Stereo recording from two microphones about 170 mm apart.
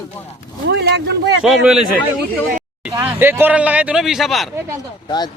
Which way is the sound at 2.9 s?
15° right (ahead or behind).